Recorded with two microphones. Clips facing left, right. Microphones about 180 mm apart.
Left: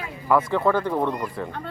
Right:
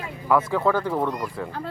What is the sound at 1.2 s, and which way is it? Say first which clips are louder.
Speech: left 1 dB; 5° left (ahead or behind).